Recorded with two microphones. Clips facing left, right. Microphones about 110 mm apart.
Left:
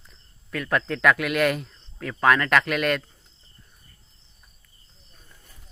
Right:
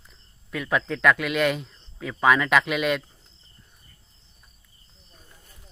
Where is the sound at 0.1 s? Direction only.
5° right (ahead or behind).